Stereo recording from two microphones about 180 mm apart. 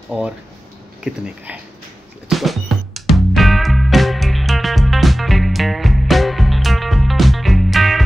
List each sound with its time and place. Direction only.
0.1 s speech: centre (ahead or behind)
2.2 s music: centre (ahead or behind)